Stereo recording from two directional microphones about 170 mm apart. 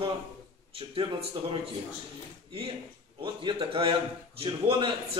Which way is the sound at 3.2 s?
30° right (ahead or behind).